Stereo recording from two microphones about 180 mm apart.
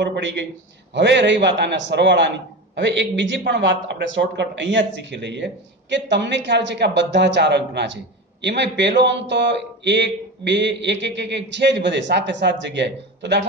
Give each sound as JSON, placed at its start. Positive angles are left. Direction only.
{"t": 0.0, "sound": "a man's voice", "side_deg": -75}